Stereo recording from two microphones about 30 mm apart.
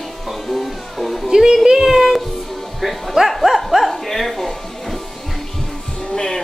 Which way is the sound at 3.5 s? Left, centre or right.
Right.